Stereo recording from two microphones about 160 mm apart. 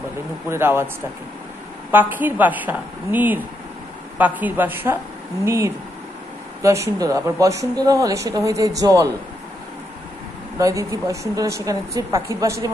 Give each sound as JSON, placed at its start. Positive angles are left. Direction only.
{"t": 0.5, "sound": "speech", "side_deg": -15}
{"t": 1.9, "sound": "a woman's voice", "side_deg": -10}
{"t": 10.6, "sound": "a woman's voice", "side_deg": -20}